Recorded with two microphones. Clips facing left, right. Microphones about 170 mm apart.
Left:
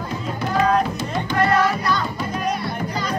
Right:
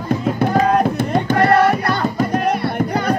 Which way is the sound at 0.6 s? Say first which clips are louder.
Right 1 dB; 55° right (ahead or behind).